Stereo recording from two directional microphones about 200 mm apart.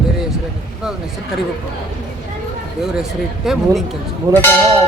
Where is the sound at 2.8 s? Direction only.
Centre (ahead or behind).